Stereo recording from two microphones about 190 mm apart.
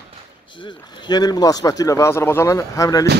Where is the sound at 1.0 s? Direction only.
20° left (ahead or behind).